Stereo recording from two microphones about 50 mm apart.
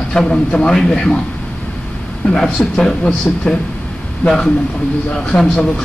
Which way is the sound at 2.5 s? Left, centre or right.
Left.